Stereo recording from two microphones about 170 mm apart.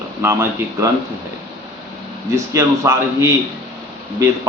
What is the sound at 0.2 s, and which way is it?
Speech, 15° right (ahead or behind).